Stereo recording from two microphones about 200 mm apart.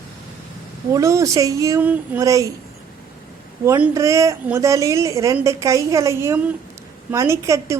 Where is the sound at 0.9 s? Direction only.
15° right (ahead or behind).